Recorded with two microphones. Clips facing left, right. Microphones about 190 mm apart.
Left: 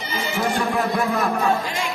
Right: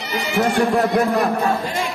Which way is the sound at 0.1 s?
70° right (ahead or behind).